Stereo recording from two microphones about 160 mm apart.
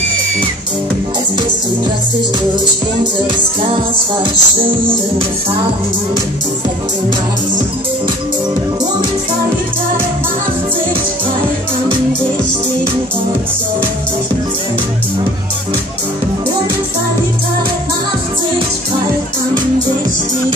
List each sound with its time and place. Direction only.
4.2 s music: 35° right (ahead or behind)